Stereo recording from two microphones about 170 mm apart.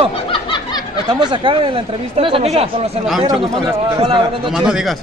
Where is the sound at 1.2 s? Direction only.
30° right (ahead or behind).